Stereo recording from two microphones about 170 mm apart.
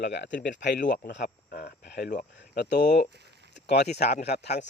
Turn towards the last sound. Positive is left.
turn(degrees=75)  # may be behind; listen again after turning